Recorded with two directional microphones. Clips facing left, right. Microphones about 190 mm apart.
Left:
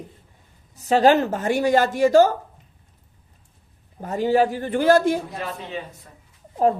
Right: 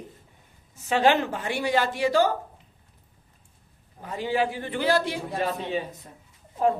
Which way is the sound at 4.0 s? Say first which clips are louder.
Left 7 dB; 45° left (ahead or behind).